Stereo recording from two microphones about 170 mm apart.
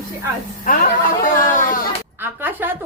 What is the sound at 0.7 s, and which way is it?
Speech, 55° left (ahead or behind).